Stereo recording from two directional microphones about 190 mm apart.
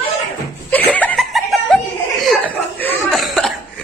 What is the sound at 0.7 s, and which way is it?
Laughter, 10° left (ahead or behind).